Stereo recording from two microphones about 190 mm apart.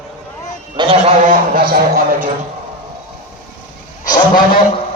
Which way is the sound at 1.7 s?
50° right (ahead or behind).